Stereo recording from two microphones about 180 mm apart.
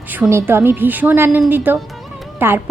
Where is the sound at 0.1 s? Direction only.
15° right (ahead or behind).